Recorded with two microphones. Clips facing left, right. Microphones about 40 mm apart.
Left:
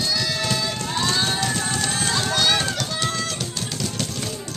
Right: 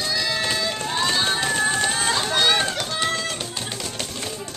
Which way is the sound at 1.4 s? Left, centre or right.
Right.